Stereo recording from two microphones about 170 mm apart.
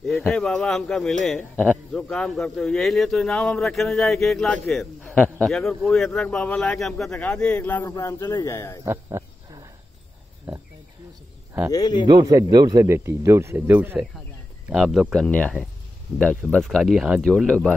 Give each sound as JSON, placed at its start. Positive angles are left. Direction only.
{"t": 0.3, "sound": "speech", "side_deg": 5}
{"t": 8.8, "sound": "a sound", "side_deg": -15}
{"t": 11.7, "sound": "speech", "side_deg": 25}
{"t": 12.1, "sound": "a man's voice", "side_deg": -20}